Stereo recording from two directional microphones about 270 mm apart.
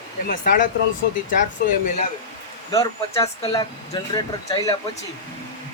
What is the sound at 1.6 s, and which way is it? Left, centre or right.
Speech, left.